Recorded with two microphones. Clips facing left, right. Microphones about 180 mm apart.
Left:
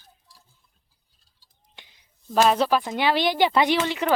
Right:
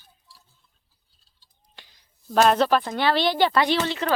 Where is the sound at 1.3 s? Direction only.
20° left (ahead or behind).